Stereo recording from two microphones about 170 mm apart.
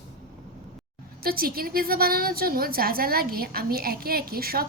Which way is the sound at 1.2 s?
60° right (ahead or behind).